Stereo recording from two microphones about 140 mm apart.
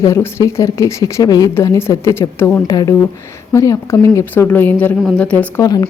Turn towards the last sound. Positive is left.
turn(degrees=30)  # may be behind; listen again after turning